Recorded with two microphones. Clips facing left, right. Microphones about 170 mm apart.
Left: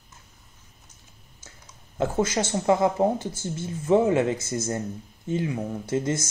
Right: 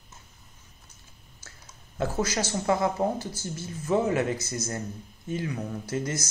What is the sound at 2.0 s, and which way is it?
Speech, 25° left (ahead or behind).